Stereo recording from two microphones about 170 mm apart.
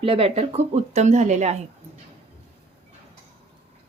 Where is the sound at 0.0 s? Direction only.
35° right (ahead or behind).